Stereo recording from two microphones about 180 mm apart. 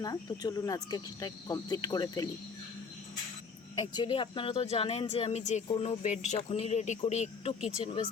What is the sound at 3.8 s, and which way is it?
Speech, 25° left (ahead or behind).